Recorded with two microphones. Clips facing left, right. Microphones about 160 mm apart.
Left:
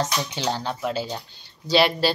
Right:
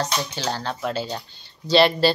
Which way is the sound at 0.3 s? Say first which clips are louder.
Left 1 dB; 20° left (ahead or behind).